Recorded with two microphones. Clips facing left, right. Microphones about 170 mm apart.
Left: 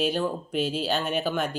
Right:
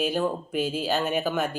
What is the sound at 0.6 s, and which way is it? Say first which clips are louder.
Speech: even; 50° right (ahead or behind).